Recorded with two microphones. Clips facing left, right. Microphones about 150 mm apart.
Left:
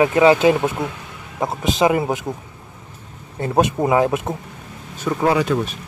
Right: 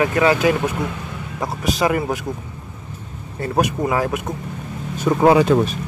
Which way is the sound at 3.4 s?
25° left (ahead or behind).